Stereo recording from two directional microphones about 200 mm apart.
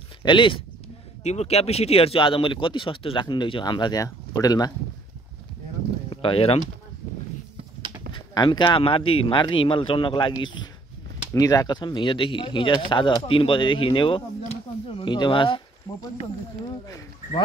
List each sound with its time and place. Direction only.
0.2 s speech: 25° left (ahead or behind)
6.0 s speech: 25° left (ahead or behind)
8.1 s speech: 25° left (ahead or behind)